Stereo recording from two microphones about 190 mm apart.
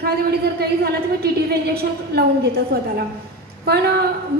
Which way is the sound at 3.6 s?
60° right (ahead or behind).